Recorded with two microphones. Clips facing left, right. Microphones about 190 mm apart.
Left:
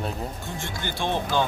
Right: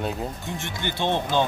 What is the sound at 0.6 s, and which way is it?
Speech, 20° right (ahead or behind).